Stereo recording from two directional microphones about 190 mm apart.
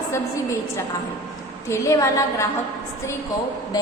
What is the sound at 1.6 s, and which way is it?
Speech, 15° left (ahead or behind).